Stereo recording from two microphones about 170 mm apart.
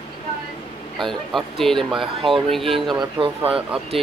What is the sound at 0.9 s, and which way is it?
Speech, centre (ahead or behind).